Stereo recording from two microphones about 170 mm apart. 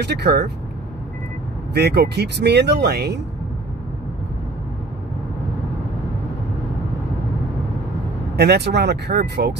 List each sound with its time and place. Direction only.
0.0 s speech: 75° right (ahead or behind)
1.7 s speech: 75° right (ahead or behind)
8.4 s speech: 75° right (ahead or behind)